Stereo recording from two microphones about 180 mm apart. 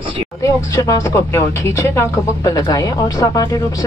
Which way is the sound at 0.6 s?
15° left (ahead or behind).